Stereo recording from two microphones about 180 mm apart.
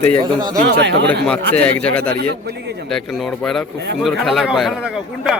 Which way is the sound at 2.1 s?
65° right (ahead or behind).